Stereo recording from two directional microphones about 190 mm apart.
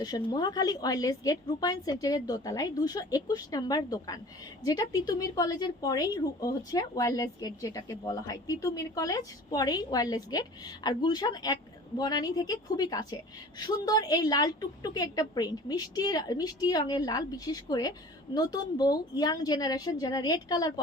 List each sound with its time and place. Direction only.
0.0 s a woman's voice: 20° left (ahead or behind)